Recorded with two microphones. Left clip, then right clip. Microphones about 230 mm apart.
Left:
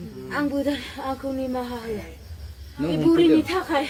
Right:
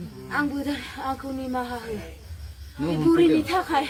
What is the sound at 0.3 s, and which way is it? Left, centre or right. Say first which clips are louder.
Speech: left 2 dB; centre.